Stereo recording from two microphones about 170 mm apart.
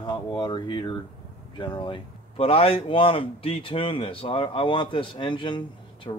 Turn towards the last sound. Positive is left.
turn(degrees=30)  # may be behind; listen again after turning